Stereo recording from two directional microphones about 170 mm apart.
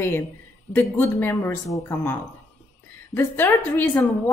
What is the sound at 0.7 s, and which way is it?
A woman's voice, 10° left (ahead or behind).